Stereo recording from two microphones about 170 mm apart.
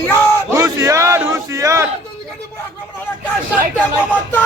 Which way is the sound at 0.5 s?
20° right (ahead or behind).